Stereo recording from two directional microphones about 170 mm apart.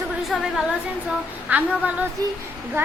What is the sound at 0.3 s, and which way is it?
A child's voice, centre (ahead or behind).